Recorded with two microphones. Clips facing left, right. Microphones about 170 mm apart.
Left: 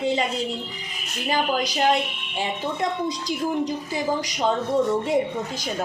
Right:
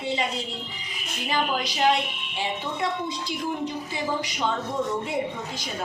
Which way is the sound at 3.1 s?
40° left (ahead or behind).